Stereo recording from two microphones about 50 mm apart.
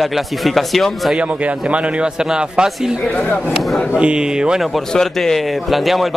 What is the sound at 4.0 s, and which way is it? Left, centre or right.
Speech, centre.